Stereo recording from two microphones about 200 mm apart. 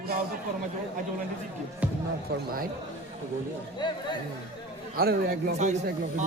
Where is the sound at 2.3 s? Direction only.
50° right (ahead or behind).